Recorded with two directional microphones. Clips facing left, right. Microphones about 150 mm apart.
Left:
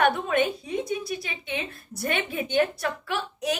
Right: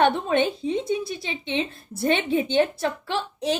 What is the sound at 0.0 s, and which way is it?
A woman's voice, 25° right (ahead or behind).